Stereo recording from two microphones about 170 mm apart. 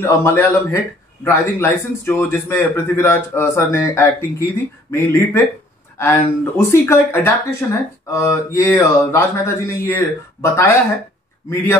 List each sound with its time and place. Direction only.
0.0 s a man's voice: 15° left (ahead or behind)